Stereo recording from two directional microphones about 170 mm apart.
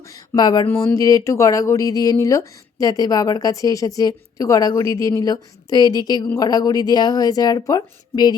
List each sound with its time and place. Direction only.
0.3 s speech: 25° left (ahead or behind)
0.7 s speech: 10° left (ahead or behind)
0.9 s speech: 20° left (ahead or behind)